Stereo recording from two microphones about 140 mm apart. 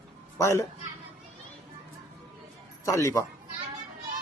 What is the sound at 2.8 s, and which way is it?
Speech, 20° left (ahead or behind).